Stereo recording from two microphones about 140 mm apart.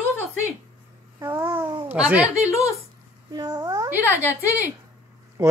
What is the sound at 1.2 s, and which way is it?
Babbling, 15° right (ahead or behind).